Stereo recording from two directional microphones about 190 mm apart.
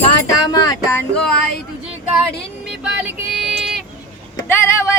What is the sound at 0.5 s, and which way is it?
Music, 15° left (ahead or behind).